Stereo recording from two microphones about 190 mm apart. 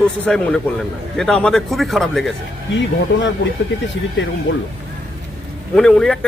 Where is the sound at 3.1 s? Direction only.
70° left (ahead or behind).